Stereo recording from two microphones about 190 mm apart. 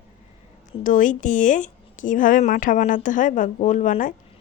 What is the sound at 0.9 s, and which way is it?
A woman's voice, 40° left (ahead or behind).